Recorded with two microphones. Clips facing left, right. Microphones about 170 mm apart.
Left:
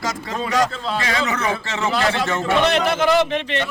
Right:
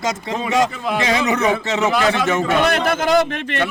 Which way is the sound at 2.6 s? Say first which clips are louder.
Even; 50° right (ahead or behind).